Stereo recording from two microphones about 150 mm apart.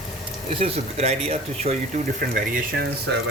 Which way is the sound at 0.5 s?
40° right (ahead or behind).